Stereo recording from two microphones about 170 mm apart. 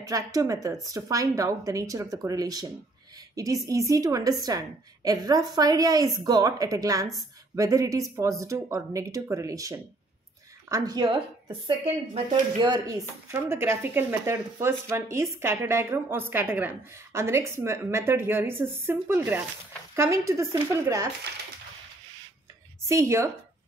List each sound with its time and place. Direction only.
0.0 s a woman's voice: 20° right (ahead or behind)
22.8 s speech: 15° right (ahead or behind)